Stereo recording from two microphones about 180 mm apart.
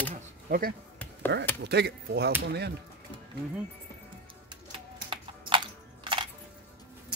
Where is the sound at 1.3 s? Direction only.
70° right (ahead or behind).